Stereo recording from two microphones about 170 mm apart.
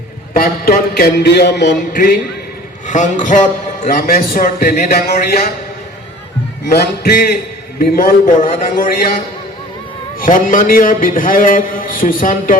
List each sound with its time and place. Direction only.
0.3 s a sound: 60° left (ahead or behind); by 1.7 s 85° left
1.9 s a man's voice: 55° left (ahead or behind)
6.7 s a man's voice: 65° left (ahead or behind)
10.2 s a man's voice: 50° left (ahead or behind)